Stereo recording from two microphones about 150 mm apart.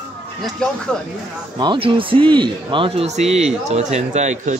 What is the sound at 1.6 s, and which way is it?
A man's voice, 35° right (ahead or behind).